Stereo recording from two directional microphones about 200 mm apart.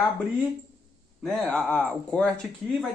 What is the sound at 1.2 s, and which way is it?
Speech, centre (ahead or behind).